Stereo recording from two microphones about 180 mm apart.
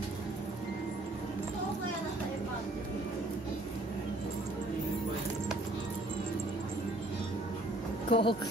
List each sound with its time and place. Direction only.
8.1 s speech: 30° left (ahead or behind)